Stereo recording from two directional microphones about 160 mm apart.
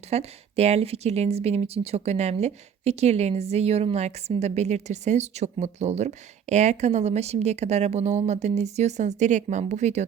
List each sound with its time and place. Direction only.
0.1 s a woman's voice: 40° right (ahead or behind)